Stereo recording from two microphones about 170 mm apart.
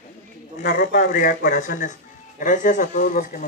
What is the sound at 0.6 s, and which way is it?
A man's voice, 55° left (ahead or behind).